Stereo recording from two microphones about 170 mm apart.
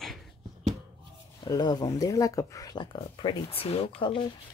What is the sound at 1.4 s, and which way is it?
Speech, 25° left (ahead or behind).